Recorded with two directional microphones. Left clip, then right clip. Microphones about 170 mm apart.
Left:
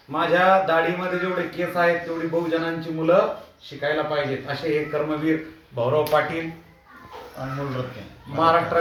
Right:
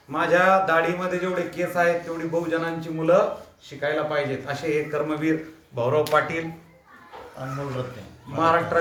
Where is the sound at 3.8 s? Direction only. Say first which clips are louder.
Left 1 dB; 5° left (ahead or behind).